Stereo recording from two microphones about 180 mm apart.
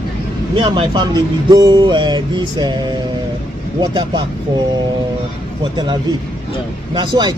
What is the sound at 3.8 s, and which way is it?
Speech, 25° right (ahead or behind).